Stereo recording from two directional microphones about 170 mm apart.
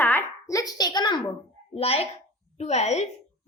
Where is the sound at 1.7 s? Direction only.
35° left (ahead or behind).